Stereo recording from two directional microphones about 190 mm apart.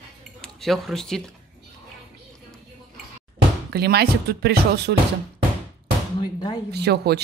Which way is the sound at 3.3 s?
60° right (ahead or behind).